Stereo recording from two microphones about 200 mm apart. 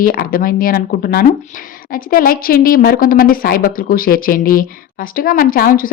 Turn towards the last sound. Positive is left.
turn(degrees=45)  # may be behind; listen again after turning